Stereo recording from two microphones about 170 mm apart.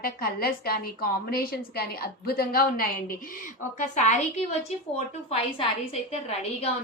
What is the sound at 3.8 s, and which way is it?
A woman's voice, 45° left (ahead or behind).